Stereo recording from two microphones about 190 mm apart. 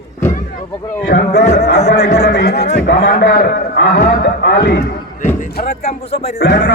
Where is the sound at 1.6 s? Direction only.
60° left (ahead or behind).